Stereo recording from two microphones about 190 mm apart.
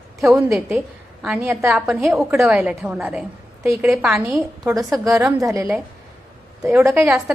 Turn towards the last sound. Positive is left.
turn(degrees=-10)  # may be behind; listen again after turning